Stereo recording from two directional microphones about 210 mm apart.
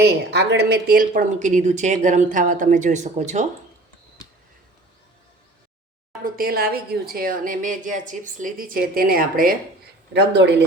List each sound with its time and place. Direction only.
0.0 s speech: 55° right (ahead or behind); by 3.4 s 35° right (ahead or behind)
6.2 s speech: 45° right (ahead or behind)
10.1 s speech: 55° right (ahead or behind)